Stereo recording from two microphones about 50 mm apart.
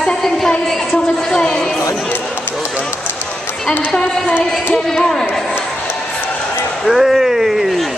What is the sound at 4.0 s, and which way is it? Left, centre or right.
Speech, left.